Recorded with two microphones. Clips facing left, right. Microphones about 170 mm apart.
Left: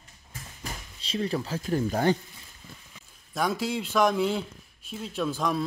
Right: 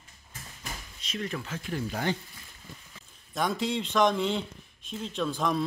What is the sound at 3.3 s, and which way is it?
A man's voice, 5° left (ahead or behind).